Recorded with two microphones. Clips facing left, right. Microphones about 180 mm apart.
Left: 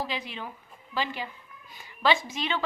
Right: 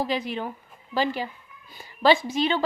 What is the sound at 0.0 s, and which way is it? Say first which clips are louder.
A woman's voice: right 7 dB; 45° right (ahead or behind).